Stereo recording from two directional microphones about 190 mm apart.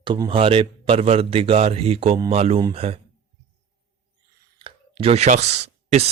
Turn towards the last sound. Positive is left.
turn(degrees=-35)  # may be behind; listen again after turning